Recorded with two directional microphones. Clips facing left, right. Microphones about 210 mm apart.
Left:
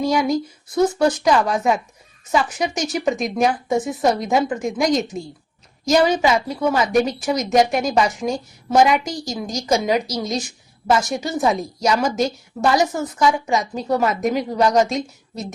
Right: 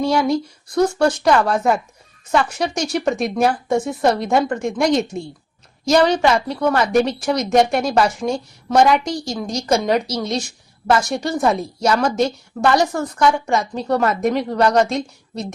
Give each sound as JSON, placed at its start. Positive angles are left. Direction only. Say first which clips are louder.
{"t": 0.0, "sound": "a woman's voice", "louder": "right 1 dB", "side_deg": 0}
{"t": 11.9, "sound": "a woman's voice", "louder": "right 1 dB", "side_deg": 15}
{"t": 12.1, "sound": "a woman's voice", "louder": "right 2 dB", "side_deg": 0}